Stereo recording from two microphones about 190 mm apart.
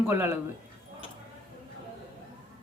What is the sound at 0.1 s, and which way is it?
Speech, 10° right (ahead or behind).